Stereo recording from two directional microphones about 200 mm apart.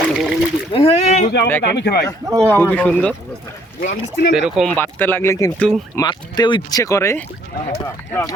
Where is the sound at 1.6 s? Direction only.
55° left (ahead or behind).